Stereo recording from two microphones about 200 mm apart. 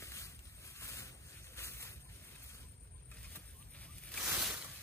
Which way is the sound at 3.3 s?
5° left (ahead or behind).